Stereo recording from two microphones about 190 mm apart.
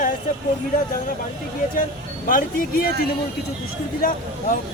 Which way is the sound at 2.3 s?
45° left (ahead or behind).